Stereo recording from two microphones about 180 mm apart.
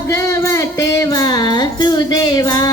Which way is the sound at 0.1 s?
15° left (ahead or behind).